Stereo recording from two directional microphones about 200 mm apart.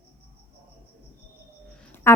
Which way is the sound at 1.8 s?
10° left (ahead or behind).